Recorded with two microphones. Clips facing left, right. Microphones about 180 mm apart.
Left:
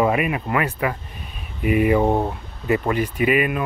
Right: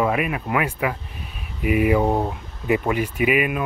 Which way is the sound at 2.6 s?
10° right (ahead or behind).